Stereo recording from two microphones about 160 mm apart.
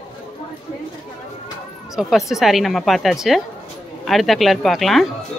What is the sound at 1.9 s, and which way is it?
Speech, centre (ahead or behind).